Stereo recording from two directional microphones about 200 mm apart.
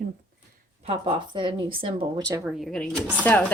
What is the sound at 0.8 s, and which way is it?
Speech, 25° right (ahead or behind).